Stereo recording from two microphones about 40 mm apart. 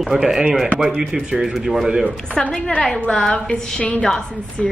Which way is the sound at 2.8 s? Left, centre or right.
Centre.